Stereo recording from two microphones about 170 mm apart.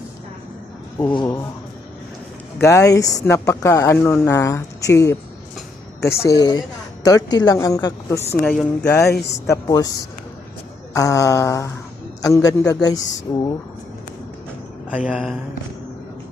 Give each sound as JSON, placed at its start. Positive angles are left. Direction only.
{"t": 1.1, "sound": "a woman's voice", "side_deg": 25}
{"t": 2.6, "sound": "a woman's voice", "side_deg": 15}
{"t": 6.2, "sound": "a woman's voice", "side_deg": 20}
{"t": 10.9, "sound": "a woman's voice", "side_deg": 20}
{"t": 14.8, "sound": "speech", "side_deg": -5}